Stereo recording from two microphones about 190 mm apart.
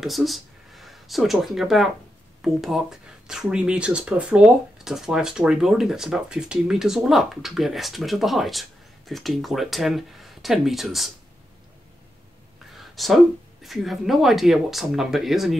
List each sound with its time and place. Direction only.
0.0 s speech: centre (ahead or behind)
12.7 s speech: centre (ahead or behind)